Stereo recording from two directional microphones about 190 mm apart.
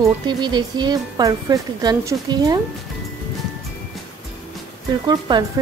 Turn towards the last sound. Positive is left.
turn(degrees=-20)  # may be behind; listen again after turning